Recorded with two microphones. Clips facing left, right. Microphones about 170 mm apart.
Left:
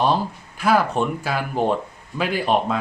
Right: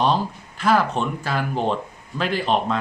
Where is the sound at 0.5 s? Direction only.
10° left (ahead or behind).